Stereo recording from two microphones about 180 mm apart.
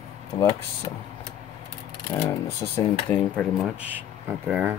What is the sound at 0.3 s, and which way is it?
Speech, 35° left (ahead or behind).